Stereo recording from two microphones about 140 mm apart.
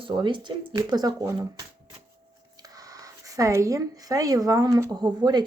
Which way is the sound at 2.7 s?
25° right (ahead or behind).